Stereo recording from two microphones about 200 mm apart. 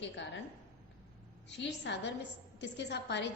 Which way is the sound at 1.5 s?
60° left (ahead or behind).